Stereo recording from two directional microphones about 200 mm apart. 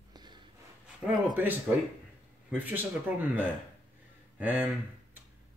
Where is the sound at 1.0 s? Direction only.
10° right (ahead or behind).